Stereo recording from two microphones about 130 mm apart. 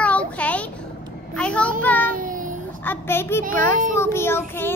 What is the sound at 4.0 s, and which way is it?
Child singing, 20° left (ahead or behind).